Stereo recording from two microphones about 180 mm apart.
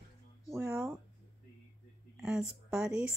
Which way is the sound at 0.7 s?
5° right (ahead or behind).